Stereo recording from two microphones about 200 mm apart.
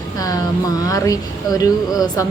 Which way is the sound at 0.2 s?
20° left (ahead or behind).